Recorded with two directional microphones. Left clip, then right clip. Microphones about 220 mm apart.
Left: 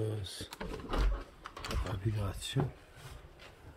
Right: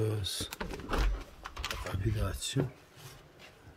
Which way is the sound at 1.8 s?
10° right (ahead or behind).